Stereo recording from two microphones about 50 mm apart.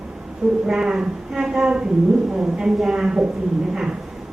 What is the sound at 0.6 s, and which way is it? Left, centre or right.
A woman's voice, centre.